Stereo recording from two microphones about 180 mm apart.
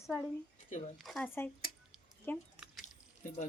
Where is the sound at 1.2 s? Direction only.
15° left (ahead or behind).